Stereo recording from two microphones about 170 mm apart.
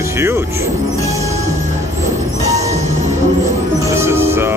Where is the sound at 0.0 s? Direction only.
15° right (ahead or behind).